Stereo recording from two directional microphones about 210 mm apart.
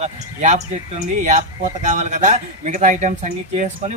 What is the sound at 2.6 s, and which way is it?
Speech, 35° right (ahead or behind).